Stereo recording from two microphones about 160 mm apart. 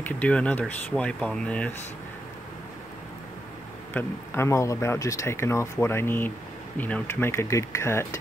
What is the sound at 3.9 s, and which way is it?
Speech, 15° left (ahead or behind).